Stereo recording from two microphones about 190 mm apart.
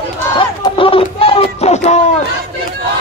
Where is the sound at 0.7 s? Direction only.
30° left (ahead or behind).